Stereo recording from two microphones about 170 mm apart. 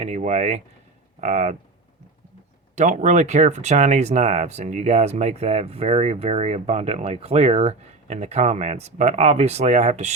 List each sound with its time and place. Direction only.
0.0 s speech: 40° right (ahead or behind)
2.7 s speech: 45° right (ahead or behind)